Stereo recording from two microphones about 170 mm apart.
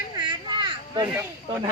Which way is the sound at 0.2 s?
25° right (ahead or behind).